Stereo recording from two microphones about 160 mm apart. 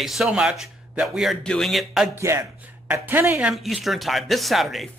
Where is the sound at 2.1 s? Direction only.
15° right (ahead or behind); by 4.8 s centre (ahead or behind).